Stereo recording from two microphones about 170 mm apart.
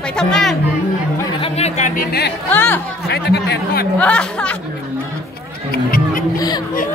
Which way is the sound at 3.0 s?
75° left (ahead or behind).